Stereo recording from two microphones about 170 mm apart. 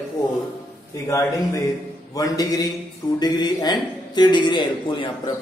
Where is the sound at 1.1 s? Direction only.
20° left (ahead or behind).